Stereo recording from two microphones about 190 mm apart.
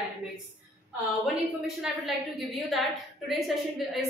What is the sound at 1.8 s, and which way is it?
A woman's voice, centre (ahead or behind).